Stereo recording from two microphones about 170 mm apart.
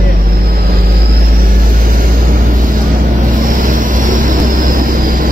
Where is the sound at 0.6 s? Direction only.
60° right (ahead or behind).